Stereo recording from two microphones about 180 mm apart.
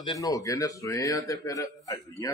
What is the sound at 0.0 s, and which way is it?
A man's voice, 20° left (ahead or behind).